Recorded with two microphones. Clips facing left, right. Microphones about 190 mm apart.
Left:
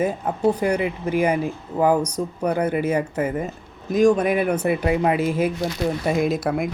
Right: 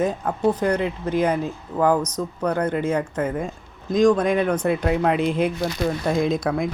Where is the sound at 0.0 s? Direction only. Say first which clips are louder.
Even; 10° left (ahead or behind).